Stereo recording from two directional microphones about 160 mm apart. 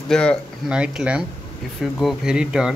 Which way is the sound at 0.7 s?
5° right (ahead or behind).